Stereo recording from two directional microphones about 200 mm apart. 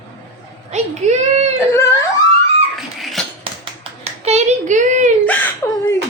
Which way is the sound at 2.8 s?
Centre (ahead or behind).